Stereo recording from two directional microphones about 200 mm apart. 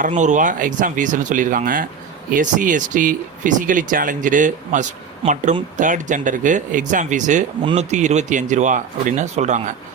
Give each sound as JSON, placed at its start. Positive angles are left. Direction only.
{"t": 0.1, "sound": "speech", "side_deg": -35}